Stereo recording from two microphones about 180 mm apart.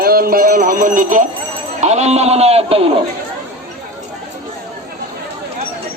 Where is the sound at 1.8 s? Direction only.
40° right (ahead or behind).